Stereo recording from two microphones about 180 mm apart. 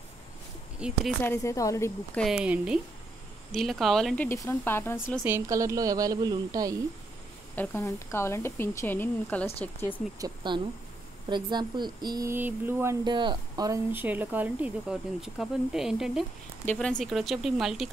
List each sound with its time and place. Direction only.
0.7 s speech: 5° right (ahead or behind)
1.2 s a woman's voice: 15° left (ahead or behind)
2.1 s a woman's voice: centre (ahead or behind)
5.2 s speech: 15° right (ahead or behind)
7.5 s a woman's voice: 15° left (ahead or behind)
10.1 s speech: 25° right (ahead or behind)
13.0 s speech: 25° right (ahead or behind); by 17.8 s centre (ahead or behind)